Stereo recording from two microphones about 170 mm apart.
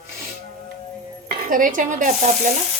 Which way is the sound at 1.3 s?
55° right (ahead or behind).